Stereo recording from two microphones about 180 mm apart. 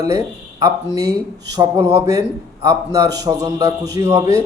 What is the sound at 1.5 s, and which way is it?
Speech, 15° right (ahead or behind).